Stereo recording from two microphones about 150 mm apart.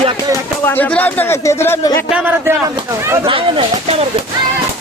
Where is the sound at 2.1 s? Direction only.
10° right (ahead or behind).